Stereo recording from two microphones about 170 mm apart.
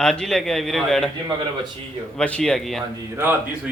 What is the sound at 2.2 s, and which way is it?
Speech, 5° left (ahead or behind).